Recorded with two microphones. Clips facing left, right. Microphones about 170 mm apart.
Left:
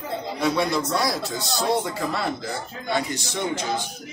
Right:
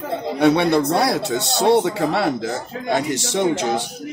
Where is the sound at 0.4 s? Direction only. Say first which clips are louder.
Right 8 dB; 65° right (ahead or behind).